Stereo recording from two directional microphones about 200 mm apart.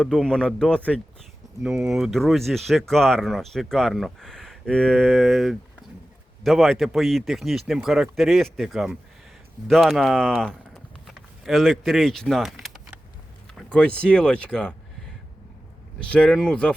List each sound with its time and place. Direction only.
0.0 s speech: 5° left (ahead or behind)
11.0 s vehicle: centre (ahead or behind)
13.6 s speech: 5° left (ahead or behind)
16.0 s speech: 5° left (ahead or behind)